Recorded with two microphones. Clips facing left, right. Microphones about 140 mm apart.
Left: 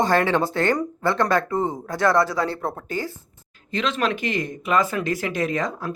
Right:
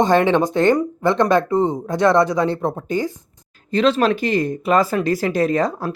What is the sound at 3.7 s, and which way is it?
Speech, 35° right (ahead or behind).